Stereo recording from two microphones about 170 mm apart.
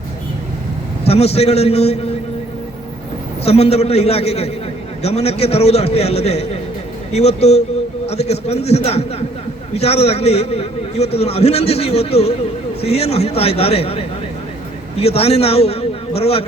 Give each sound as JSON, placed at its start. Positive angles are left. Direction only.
{"t": 1.0, "sound": "a man's voice", "side_deg": 35}
{"t": 3.4, "sound": "a man's voice", "side_deg": 35}